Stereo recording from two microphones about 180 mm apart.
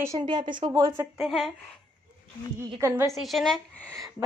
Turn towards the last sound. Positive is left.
turn(degrees=0)  # may be behind; listen again after turning